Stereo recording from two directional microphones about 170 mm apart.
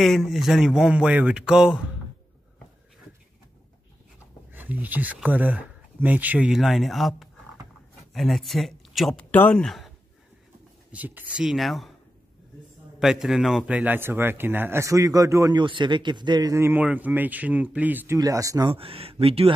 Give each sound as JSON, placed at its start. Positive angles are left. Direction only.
{"t": 0.0, "sound": "speech", "side_deg": 0}
{"t": 4.5, "sound": "a man's voice", "side_deg": -10}
{"t": 10.9, "sound": "a man's voice", "side_deg": -10}
{"t": 13.0, "sound": "a man's voice", "side_deg": -5}
{"t": 18.7, "sound": "speech", "side_deg": -35}